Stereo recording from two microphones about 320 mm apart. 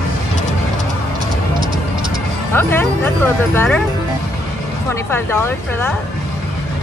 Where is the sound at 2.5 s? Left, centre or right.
Centre.